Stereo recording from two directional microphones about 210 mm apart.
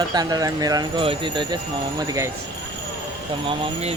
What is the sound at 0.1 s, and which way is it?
Speech, 20° right (ahead or behind).